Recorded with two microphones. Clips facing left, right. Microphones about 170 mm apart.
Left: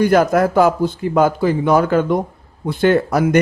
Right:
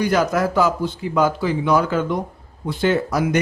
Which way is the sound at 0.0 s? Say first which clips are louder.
Left 5 dB; 50° left (ahead or behind).